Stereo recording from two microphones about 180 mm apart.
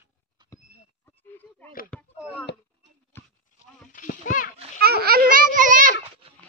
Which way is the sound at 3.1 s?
15° left (ahead or behind).